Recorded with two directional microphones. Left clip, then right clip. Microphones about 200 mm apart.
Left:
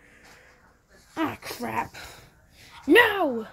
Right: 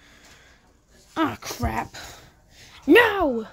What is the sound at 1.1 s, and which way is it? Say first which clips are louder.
Speech: right 4 dB; 25° right (ahead or behind).